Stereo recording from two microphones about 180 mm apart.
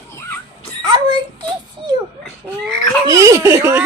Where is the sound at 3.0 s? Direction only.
15° right (ahead or behind).